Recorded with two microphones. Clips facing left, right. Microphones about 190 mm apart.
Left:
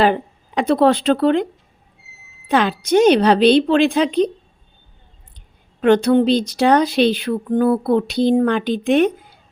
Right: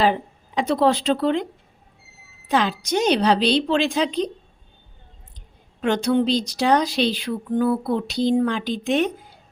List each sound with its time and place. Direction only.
0.0 s speech: 60° left (ahead or behind)
2.5 s speech: 55° left (ahead or behind)
5.8 s speech: 55° left (ahead or behind)